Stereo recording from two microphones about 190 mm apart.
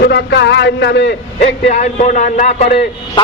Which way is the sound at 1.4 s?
40° left (ahead or behind).